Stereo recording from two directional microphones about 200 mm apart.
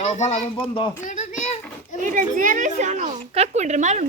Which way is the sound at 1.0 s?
40° left (ahead or behind).